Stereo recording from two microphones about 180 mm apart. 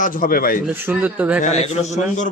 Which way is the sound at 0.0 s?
50° left (ahead or behind).